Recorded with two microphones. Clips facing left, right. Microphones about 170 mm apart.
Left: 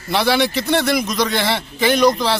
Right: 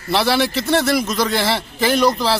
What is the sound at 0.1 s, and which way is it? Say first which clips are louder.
A man's voice: even; centre (ahead or behind).